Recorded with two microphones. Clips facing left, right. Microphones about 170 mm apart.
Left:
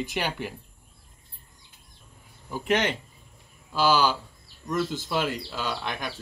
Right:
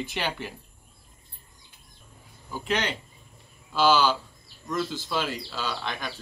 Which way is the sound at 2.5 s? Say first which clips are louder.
Left 3 dB; 20° left (ahead or behind).